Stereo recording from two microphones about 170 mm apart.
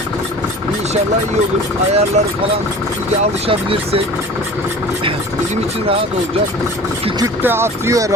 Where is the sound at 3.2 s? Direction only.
35° right (ahead or behind).